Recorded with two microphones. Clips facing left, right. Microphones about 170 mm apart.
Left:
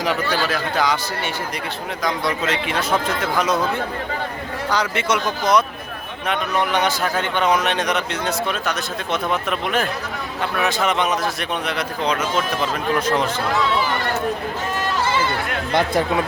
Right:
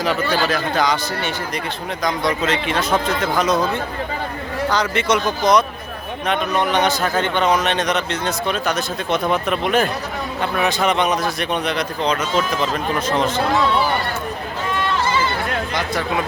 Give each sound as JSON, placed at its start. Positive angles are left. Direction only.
{"t": 0.5, "sound": "a man's voice", "side_deg": 5}
{"t": 4.7, "sound": "a man's voice", "side_deg": 10}
{"t": 15.7, "sound": "speech", "side_deg": 55}